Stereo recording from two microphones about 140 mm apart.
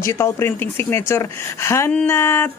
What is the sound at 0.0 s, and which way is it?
Speech, 20° left (ahead or behind).